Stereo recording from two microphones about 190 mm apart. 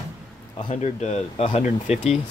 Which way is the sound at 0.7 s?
35° left (ahead or behind).